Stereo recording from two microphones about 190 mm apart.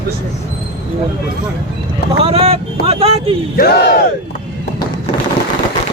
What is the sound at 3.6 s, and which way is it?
Battle cry, 55° left (ahead or behind).